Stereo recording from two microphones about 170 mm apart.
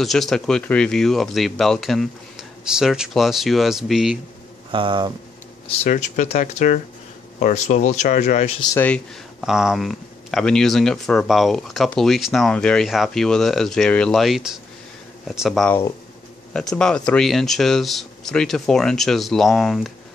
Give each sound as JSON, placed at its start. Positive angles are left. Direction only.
{"t": 0.0, "sound": "speech", "side_deg": 0}
{"t": 4.6, "sound": "speech", "side_deg": -30}
{"t": 5.9, "sound": "speech", "side_deg": 45}
{"t": 8.7, "sound": "speech", "side_deg": 10}
{"t": 9.4, "sound": "speech", "side_deg": -5}